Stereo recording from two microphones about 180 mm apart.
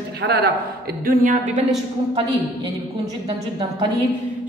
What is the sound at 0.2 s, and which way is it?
Speech, 65° right (ahead or behind).